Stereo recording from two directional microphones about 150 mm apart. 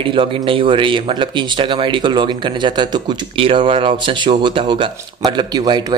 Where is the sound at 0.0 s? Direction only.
35° right (ahead or behind).